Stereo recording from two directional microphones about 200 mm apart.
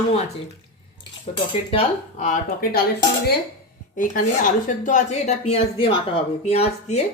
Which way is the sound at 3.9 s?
40° left (ahead or behind).